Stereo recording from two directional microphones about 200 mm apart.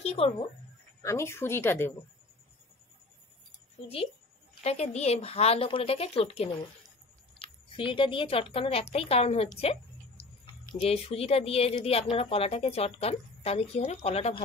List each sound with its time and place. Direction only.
0.0 s speech: 30° left (ahead or behind)
1.0 s a woman's voice: 15° left (ahead or behind)
3.8 s a woman's voice: 30° left (ahead or behind)
9.6 s a sound: 30° left (ahead or behind)
10.7 s a woman's voice: 30° left (ahead or behind)